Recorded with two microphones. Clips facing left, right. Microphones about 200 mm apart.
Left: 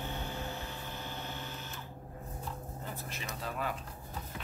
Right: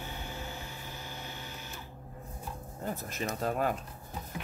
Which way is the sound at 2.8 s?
45° right (ahead or behind).